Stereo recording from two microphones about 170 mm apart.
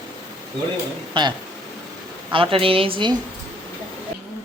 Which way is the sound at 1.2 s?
30° right (ahead or behind).